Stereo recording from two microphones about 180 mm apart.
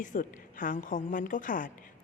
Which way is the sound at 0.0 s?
45° left (ahead or behind).